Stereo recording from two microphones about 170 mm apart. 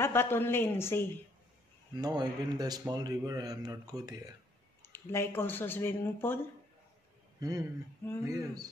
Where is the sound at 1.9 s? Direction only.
25° right (ahead or behind).